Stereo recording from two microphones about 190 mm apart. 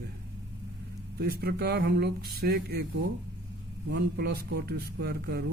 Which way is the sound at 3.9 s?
55° right (ahead or behind).